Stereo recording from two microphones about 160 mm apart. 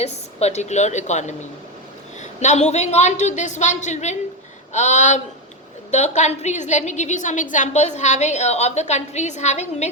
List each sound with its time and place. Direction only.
0.0 s a woman's voice: 40° left (ahead or behind)